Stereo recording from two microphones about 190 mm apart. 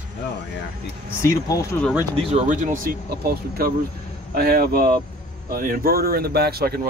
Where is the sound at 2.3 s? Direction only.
40° right (ahead or behind).